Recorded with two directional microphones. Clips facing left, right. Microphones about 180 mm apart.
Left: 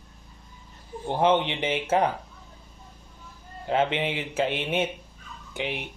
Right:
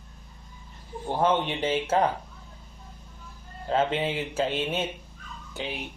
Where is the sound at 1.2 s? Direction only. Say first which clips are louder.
Left 2 dB; 15° left (ahead or behind).